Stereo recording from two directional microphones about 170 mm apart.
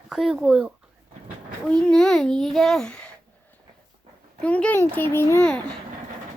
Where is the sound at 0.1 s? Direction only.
Centre (ahead or behind).